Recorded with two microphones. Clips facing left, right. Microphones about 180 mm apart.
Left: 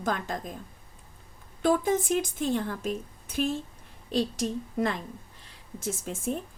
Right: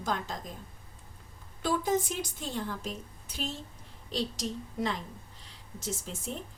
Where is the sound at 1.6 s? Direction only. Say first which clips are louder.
Left 4 dB; 55° left (ahead or behind).